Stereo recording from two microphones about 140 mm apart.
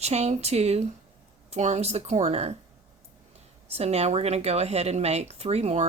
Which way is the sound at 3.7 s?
50° right (ahead or behind).